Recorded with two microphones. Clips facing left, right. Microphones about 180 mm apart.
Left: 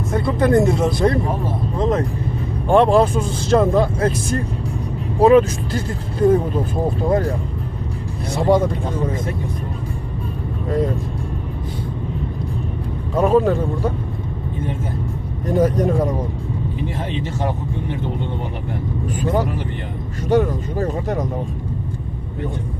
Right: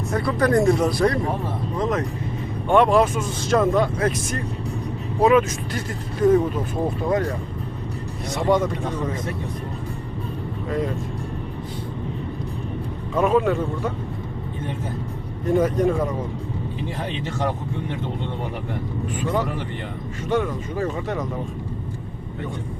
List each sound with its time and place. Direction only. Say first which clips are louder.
0.1 s speech: left 3 dB; 25° left (ahead or behind)
8.4 s speech: left 4 dB; 35° left (ahead or behind)
13.1 s speech: left 3 dB; 35° left (ahead or behind)
15.4 s speech: left 2 dB; 40° left (ahead or behind)
19.2 s speech: left 4 dB; 40° left (ahead or behind)